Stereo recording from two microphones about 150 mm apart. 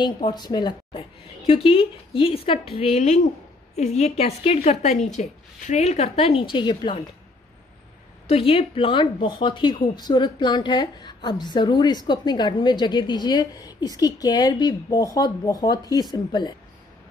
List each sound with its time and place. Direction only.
0.0 s speech: 30° left (ahead or behind)
1.5 s a woman's voice: 40° left (ahead or behind)
6.5 s speech: 30° left (ahead or behind)
8.3 s speech: 40° left (ahead or behind)